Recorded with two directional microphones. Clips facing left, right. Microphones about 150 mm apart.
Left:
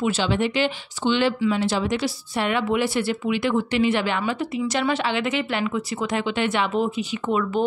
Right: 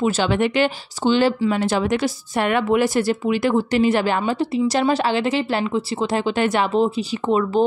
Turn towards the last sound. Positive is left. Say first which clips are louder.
# right 4 dB
turn(degrees=-35)  # may be behind; listen again after turning